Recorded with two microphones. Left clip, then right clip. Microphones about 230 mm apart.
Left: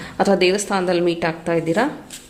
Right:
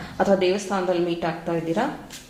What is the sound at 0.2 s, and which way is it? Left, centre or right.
Speech, left.